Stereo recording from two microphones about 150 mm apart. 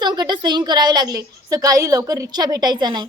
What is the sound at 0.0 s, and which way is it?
A woman's voice, 30° right (ahead or behind).